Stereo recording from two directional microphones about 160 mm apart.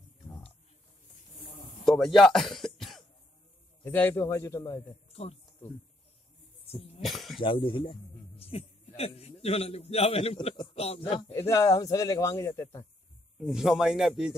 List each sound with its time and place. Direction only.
1.9 s speech: centre (ahead or behind)
3.8 s a man's voice: 15° left (ahead or behind)
5.1 s speech: 40° left (ahead or behind)
6.6 s cough: 40° left (ahead or behind)
7.0 s cough: centre (ahead or behind)
7.3 s a man's voice: 35° left (ahead or behind)
11.3 s a man's voice: 20° left (ahead or behind)
13.4 s speech: centre (ahead or behind)